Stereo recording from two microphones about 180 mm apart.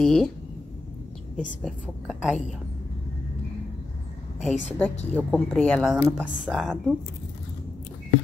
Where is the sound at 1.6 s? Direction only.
Centre (ahead or behind).